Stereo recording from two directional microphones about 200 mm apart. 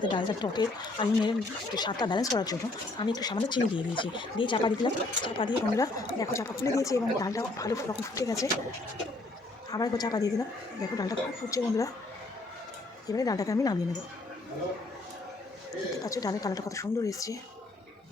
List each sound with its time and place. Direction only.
0.0 s speech: 25° left (ahead or behind)
9.7 s speech: 20° left (ahead or behind)
13.1 s speech: 15° left (ahead or behind)
16.0 s speech: 15° left (ahead or behind)